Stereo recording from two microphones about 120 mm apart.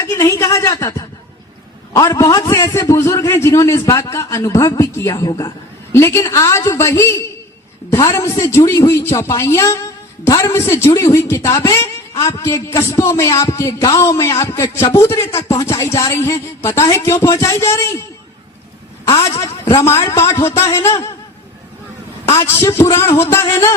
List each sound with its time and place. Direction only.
0.0 s a man's voice: 25° left (ahead or behind)
19.6 s a man's voice: 25° left (ahead or behind)
22.4 s a man's voice: 20° left (ahead or behind)